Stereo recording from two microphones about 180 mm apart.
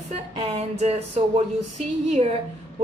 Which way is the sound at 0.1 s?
35° right (ahead or behind).